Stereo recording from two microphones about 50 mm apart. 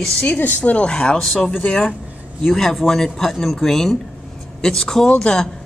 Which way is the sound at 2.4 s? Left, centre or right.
Centre.